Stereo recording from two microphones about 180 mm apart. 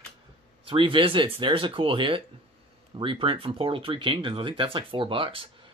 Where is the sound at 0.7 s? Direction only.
30° right (ahead or behind).